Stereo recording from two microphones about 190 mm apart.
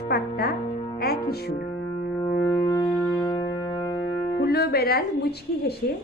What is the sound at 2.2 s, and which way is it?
Music, 20° left (ahead or behind).